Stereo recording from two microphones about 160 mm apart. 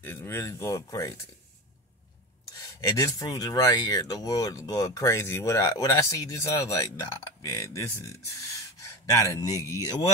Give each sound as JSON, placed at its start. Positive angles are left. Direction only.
{"t": 0.0, "sound": "speech", "side_deg": 15}
{"t": 2.8, "sound": "speech", "side_deg": 20}
{"t": 9.1, "sound": "speech", "side_deg": 20}